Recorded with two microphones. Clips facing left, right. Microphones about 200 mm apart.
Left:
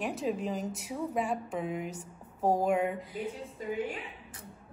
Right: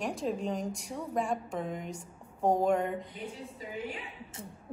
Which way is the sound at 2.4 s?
5° left (ahead or behind).